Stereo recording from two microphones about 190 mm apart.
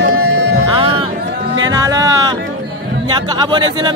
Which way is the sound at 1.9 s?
20° right (ahead or behind).